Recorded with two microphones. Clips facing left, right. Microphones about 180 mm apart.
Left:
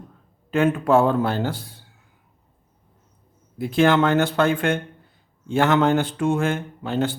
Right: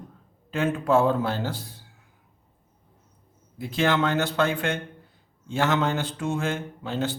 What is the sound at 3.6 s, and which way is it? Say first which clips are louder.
Speech: left 6 dB; 55° left (ahead or behind).